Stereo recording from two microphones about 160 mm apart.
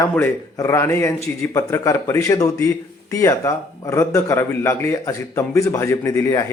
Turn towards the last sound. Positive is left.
turn(degrees=20)  # may be behind; listen again after turning